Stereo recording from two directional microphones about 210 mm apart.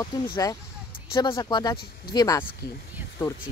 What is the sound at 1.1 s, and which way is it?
Speech, 20° left (ahead or behind).